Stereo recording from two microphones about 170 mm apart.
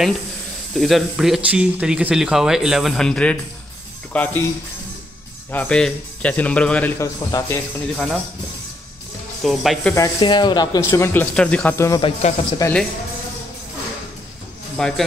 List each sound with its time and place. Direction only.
0.7 s speech: centre (ahead or behind)
5.5 s speech: 10° left (ahead or behind)
7.0 s speech: 20° left (ahead or behind)
7.9 s speech: centre (ahead or behind)
9.4 s speech: centre (ahead or behind)
9.9 s speech: 25° left (ahead or behind); by 11.7 s 5° left (ahead or behind)
11.7 s speech: 15° left (ahead or behind)
12.0 s speech: 40° left (ahead or behind)
12.6 s speech: 20° left (ahead or behind)
14.8 s speech: 5° left (ahead or behind)